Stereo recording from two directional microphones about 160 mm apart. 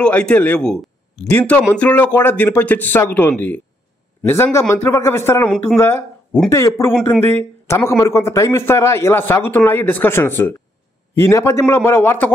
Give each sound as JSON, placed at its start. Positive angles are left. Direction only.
{"t": 0.0, "sound": "a man's voice", "side_deg": 5}
{"t": 5.5, "sound": "speech", "side_deg": 5}